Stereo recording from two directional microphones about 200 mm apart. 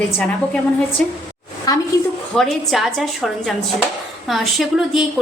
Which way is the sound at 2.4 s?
Centre (ahead or behind).